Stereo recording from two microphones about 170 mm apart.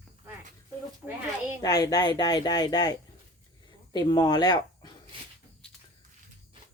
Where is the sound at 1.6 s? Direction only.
20° left (ahead or behind).